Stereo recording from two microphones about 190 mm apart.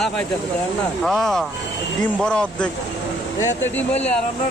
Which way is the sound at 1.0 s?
Centre (ahead or behind).